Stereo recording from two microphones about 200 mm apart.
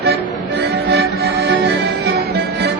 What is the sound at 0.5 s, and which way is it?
Music, 55° right (ahead or behind).